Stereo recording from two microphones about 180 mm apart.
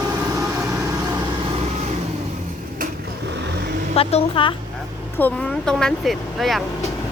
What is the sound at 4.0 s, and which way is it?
Speech, 30° left (ahead or behind).